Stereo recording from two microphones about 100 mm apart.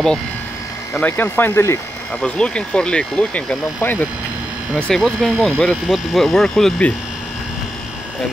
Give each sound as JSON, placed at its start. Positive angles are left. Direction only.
{"t": 1.0, "sound": "speech", "side_deg": 20}
{"t": 2.1, "sound": "speech", "side_deg": 10}
{"t": 4.7, "sound": "speech", "side_deg": 5}